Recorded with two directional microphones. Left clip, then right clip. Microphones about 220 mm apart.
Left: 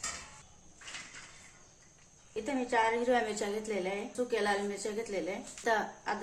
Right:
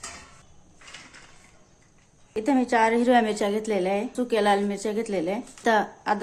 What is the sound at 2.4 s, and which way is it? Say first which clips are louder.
A woman's voice: right 9 dB; 50° right (ahead or behind).